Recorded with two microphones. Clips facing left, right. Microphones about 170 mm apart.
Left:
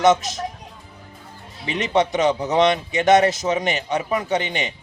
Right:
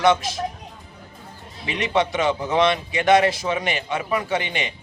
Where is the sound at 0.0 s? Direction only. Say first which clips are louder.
Left 2 dB; 20° left (ahead or behind).